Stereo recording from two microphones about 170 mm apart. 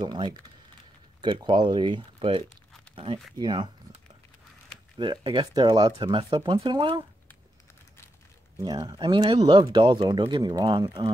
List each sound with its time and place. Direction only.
0.0 s speech: 25° right (ahead or behind)
4.9 s speech: 30° right (ahead or behind)
8.5 s speech: 20° right (ahead or behind)